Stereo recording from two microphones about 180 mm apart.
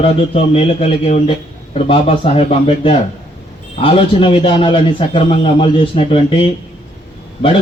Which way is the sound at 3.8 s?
30° left (ahead or behind).